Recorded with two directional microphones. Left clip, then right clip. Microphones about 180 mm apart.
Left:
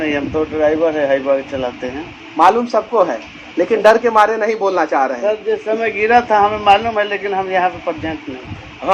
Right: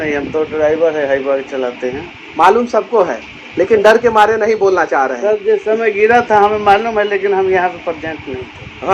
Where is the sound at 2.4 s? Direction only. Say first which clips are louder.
Right 2 dB; 45° right (ahead or behind).